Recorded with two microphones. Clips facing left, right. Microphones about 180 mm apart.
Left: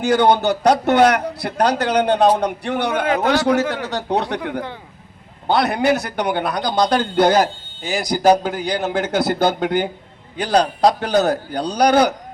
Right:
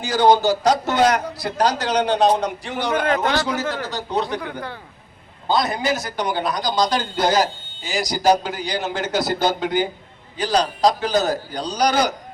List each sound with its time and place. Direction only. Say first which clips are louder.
0.0 s a man's voice: left 1 dB; 60° left (ahead or behind)
2.9 s speech: right 2 dB; 10° left (ahead or behind)
3.4 s a man's voice: left 6 dB; 65° left (ahead or behind)